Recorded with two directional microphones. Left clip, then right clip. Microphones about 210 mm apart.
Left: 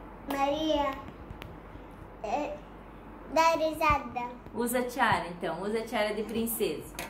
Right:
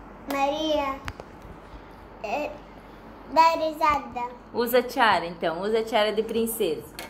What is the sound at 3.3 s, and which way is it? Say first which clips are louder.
Child singing: right 5 dB; 5° left (ahead or behind).